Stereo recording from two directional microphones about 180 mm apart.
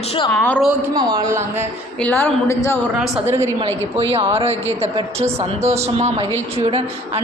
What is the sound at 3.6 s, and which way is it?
Speech, 35° right (ahead or behind).